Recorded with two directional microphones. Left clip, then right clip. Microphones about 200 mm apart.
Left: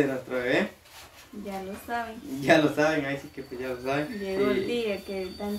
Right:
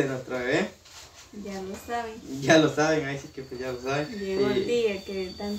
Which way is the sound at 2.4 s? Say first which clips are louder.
Right 1 dB; 20° left (ahead or behind).